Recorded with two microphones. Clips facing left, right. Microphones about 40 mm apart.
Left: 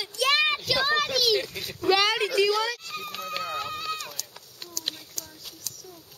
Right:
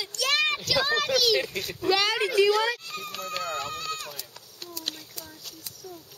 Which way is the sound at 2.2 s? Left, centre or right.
Centre.